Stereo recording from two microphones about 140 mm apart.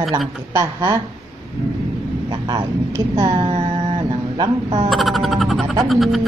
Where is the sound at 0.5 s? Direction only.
25° right (ahead or behind).